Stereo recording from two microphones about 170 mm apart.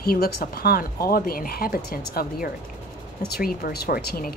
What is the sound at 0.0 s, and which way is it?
Speech, 65° left (ahead or behind).